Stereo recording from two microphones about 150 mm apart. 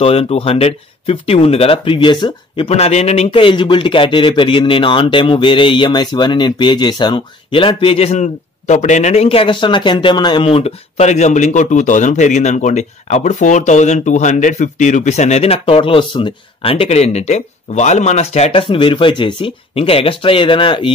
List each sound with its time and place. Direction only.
0.0 s speech: 40° left (ahead or behind)